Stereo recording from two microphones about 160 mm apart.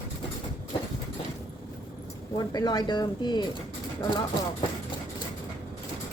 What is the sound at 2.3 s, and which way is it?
Speech, 25° left (ahead or behind).